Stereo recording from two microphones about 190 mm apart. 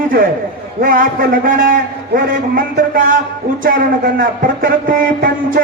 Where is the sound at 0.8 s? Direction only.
45° right (ahead or behind).